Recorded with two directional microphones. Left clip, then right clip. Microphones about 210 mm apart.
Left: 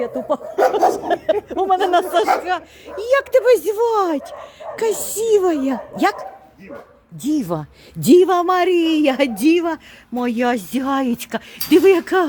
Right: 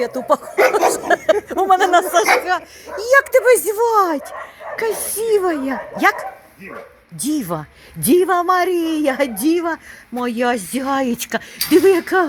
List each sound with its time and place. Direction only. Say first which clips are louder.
0.0 s speech: right 4 dB; centre (ahead or behind)
1.9 s speech: right 2 dB; 15° left (ahead or behind)
5.2 s speech: left 1 dB; 20° left (ahead or behind)
7.3 s speech: left 1 dB; 20° left (ahead or behind)